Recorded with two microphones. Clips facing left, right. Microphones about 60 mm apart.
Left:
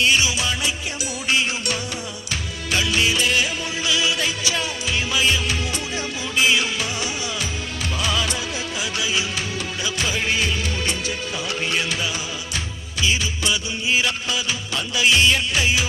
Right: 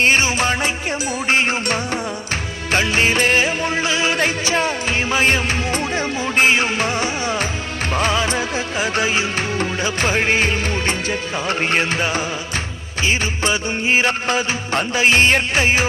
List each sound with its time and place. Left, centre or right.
0.0 s music: right